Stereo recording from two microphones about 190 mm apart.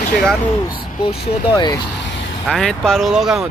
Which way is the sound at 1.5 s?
20° left (ahead or behind).